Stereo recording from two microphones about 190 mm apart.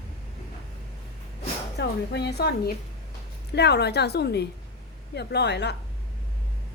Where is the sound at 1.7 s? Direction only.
60° left (ahead or behind).